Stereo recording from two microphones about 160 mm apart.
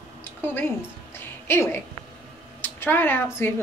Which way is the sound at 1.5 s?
15° left (ahead or behind).